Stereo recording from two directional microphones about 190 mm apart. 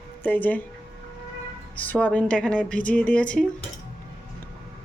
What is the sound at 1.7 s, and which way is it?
Speech, 10° left (ahead or behind).